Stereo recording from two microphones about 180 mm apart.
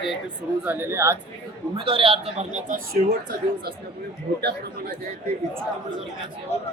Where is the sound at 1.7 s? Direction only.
30° right (ahead or behind).